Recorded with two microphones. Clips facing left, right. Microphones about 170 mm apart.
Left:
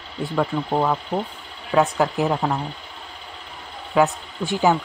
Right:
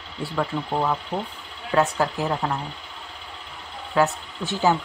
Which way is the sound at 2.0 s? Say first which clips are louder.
Left 3 dB; 15° left (ahead or behind).